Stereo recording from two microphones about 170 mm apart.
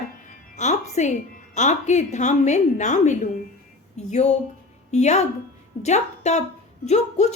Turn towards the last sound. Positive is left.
turn(degrees=40)  # may be behind; listen again after turning